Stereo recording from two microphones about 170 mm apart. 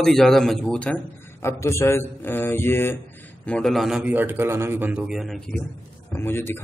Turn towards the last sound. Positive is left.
turn(degrees=15)  # may be behind; listen again after turning